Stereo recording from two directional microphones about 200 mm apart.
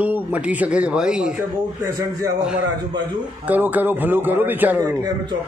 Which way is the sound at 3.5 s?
10° right (ahead or behind).